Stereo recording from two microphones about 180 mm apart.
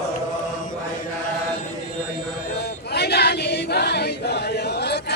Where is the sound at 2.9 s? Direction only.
65° left (ahead or behind).